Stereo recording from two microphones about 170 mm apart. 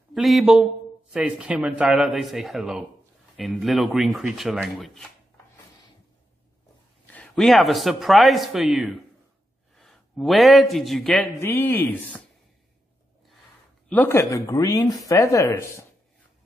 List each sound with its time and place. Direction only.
0.1 s speech: centre (ahead or behind)
7.1 s a man's voice: 5° left (ahead or behind)
11.3 s speech: 15° left (ahead or behind)
13.8 s speech: 10° left (ahead or behind)